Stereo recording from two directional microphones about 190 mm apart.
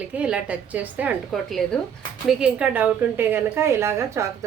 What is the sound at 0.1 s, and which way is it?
A woman's voice, 5° right (ahead or behind).